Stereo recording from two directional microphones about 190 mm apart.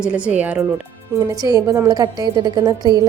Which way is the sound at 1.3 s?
20° right (ahead or behind).